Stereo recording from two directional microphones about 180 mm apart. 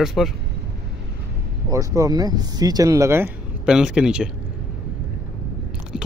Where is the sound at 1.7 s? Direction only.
20° right (ahead or behind).